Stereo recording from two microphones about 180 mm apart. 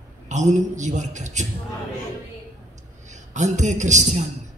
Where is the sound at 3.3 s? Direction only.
40° right (ahead or behind).